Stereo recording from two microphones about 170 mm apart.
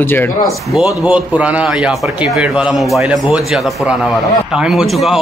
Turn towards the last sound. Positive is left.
turn(degrees=0)  # may be behind; listen again after turning